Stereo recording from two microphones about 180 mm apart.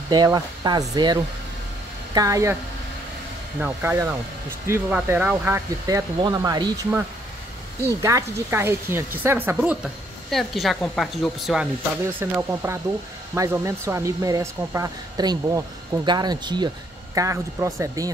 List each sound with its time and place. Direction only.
0.1 s speech: 25° right (ahead or behind)
3.6 s speech: 15° right (ahead or behind)
8.0 s speech: 15° right (ahead or behind); by 11.6 s centre (ahead or behind)
12.2 s speech: 15° right (ahead or behind)